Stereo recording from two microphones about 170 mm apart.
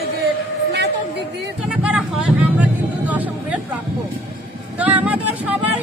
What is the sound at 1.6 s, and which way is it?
Speech, 5° right (ahead or behind).